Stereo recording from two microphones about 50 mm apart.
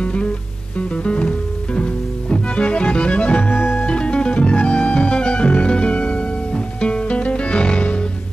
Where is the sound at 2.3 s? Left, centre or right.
Left.